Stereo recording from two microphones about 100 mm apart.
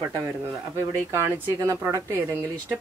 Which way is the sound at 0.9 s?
25° right (ahead or behind).